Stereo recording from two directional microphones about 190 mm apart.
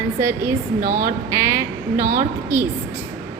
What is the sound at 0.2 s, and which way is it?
Speech, 15° right (ahead or behind).